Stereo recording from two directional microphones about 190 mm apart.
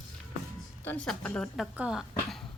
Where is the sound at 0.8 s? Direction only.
5° left (ahead or behind).